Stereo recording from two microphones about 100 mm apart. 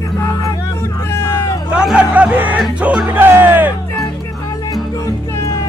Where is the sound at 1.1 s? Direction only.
25° left (ahead or behind).